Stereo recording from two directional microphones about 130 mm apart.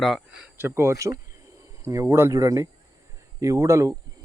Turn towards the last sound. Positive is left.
turn(degrees=-25)  # may be behind; listen again after turning